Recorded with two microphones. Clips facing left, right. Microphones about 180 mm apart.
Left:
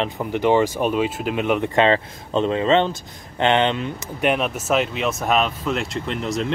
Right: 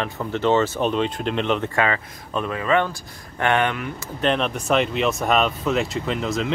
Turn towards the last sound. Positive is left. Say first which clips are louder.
# even
turn(degrees=0)  # may be behind; listen again after turning